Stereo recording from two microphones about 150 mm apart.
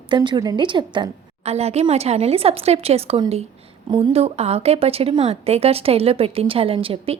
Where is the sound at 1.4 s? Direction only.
45° right (ahead or behind).